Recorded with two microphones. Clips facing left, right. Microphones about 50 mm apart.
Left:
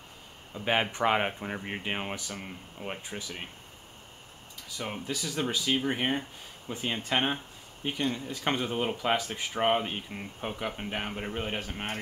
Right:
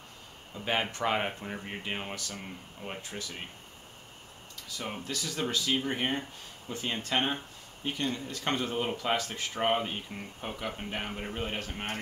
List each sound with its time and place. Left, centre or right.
0.5 s speech: centre
4.6 s speech: centre